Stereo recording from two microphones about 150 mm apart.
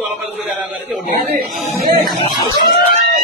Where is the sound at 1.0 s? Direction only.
70° right (ahead or behind).